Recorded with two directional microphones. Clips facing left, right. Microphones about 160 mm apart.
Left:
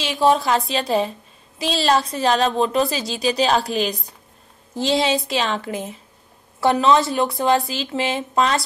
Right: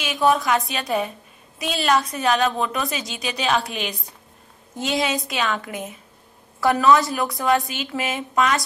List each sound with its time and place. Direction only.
0.0 s a woman's voice: 30° left (ahead or behind)